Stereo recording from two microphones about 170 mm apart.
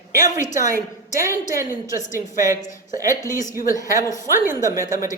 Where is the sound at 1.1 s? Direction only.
15° right (ahead or behind).